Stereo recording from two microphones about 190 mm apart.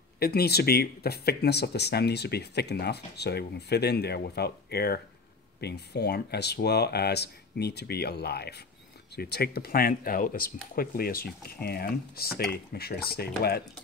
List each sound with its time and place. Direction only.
0.2 s speech: 55° left (ahead or behind)